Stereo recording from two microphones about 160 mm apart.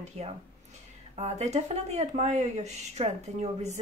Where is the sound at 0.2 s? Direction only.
45° right (ahead or behind).